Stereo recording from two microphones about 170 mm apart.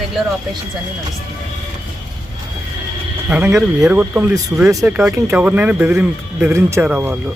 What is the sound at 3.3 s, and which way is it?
Speech, 10° right (ahead or behind).